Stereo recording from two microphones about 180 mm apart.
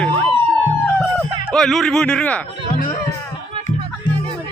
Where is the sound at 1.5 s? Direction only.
Centre (ahead or behind).